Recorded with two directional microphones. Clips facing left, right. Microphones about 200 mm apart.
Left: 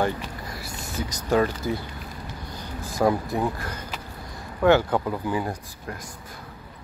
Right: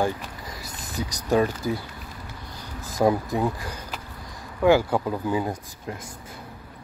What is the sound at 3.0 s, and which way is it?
Speech, 15° right (ahead or behind).